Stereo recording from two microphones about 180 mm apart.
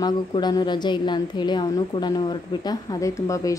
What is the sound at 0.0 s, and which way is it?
A woman's voice, 25° left (ahead or behind).